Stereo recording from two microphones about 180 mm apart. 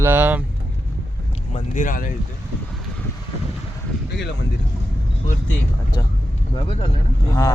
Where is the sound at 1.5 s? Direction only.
45° left (ahead or behind).